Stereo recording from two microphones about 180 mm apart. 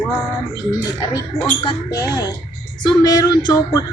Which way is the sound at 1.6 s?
20° left (ahead or behind).